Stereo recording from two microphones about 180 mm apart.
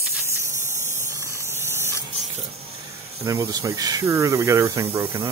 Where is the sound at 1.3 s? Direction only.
15° right (ahead or behind).